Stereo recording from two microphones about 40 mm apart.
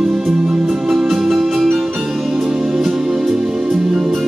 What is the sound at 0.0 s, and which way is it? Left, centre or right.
Music, centre.